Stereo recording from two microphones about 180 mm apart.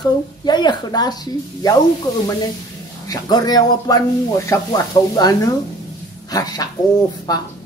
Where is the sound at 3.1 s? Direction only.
20° left (ahead or behind).